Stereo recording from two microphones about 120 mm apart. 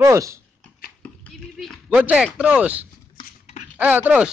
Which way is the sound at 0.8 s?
10° left (ahead or behind).